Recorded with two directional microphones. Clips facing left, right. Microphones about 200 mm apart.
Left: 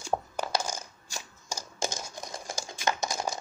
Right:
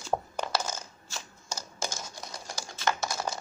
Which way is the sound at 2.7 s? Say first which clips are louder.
Even; 20° left (ahead or behind).